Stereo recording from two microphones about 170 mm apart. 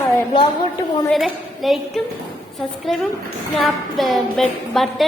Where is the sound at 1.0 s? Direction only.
Centre (ahead or behind).